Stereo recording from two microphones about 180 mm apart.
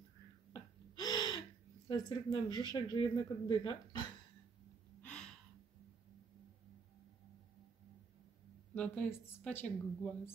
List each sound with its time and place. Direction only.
0.9 s gasp: 20° left (ahead or behind)
1.9 s speech: 20° left (ahead or behind)
5.0 s gasp: 5° left (ahead or behind)
8.7 s a woman's voice: 5° left (ahead or behind)